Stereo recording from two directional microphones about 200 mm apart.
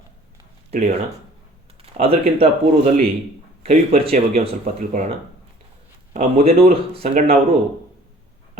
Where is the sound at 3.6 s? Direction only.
30° right (ahead or behind).